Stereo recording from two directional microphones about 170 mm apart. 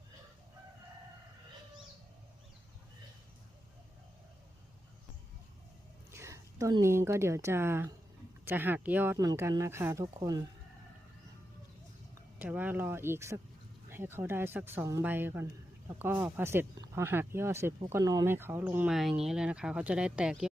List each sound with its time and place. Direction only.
6.1 s speech: 15° right (ahead or behind)
12.4 s speech: 10° right (ahead or behind)